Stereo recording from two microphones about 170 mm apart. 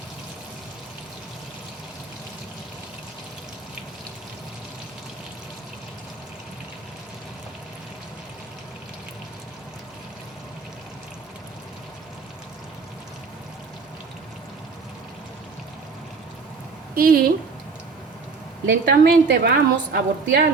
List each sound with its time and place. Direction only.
16.9 s speech: 60° right (ahead or behind)
18.6 s a woman's voice: 75° right (ahead or behind)